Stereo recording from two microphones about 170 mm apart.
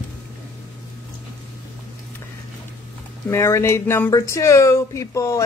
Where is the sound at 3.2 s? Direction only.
15° left (ahead or behind).